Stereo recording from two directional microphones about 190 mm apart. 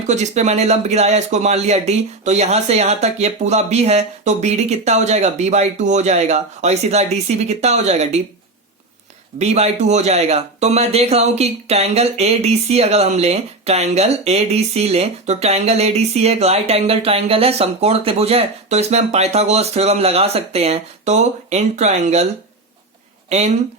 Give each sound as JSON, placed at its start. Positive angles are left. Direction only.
{"t": 0.1, "sound": "a man's voice", "side_deg": -35}
{"t": 9.4, "sound": "a man's voice", "side_deg": -35}
{"t": 23.3, "sound": "a man's voice", "side_deg": -35}